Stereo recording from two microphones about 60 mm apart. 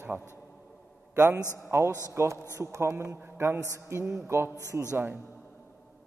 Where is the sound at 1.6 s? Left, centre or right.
Right.